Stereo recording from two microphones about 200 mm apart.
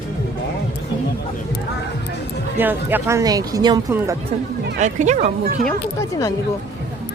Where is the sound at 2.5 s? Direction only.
10° right (ahead or behind).